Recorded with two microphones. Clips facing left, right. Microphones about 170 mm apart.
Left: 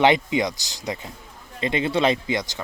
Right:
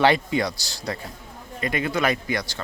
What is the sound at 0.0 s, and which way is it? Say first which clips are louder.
Speech: left 1 dB; 20° left (ahead or behind).